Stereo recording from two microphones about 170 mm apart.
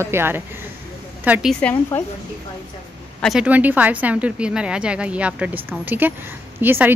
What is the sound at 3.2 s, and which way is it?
Speech, centre (ahead or behind).